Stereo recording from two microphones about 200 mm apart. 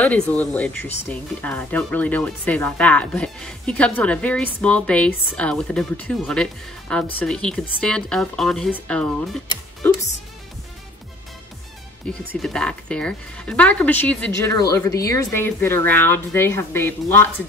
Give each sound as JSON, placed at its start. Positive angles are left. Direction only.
{"t": 0.0, "sound": "speech", "side_deg": 5}
{"t": 12.1, "sound": "speech", "side_deg": 5}